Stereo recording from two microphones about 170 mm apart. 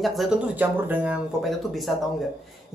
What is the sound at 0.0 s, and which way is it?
Speech, centre (ahead or behind).